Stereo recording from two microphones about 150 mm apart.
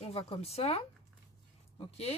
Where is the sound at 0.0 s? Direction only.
40° left (ahead or behind).